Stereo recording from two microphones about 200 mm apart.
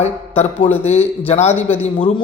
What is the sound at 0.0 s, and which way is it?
Speech, 35° left (ahead or behind).